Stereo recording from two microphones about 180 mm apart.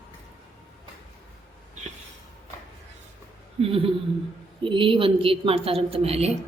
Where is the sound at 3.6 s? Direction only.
30° right (ahead or behind).